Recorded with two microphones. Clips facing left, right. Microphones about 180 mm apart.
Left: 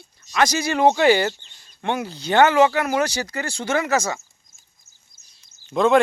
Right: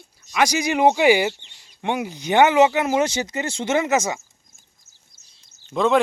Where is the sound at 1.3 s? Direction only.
75° right (ahead or behind).